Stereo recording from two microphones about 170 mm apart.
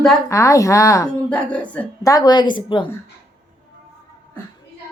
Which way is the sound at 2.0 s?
20° left (ahead or behind).